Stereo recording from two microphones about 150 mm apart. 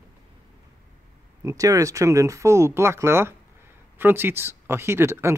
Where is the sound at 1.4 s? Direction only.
20° right (ahead or behind).